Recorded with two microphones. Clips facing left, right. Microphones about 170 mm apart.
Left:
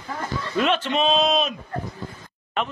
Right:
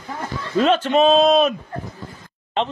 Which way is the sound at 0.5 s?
40° right (ahead or behind).